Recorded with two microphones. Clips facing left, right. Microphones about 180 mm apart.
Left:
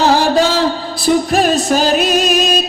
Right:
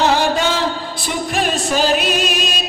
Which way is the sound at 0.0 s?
35° left (ahead or behind).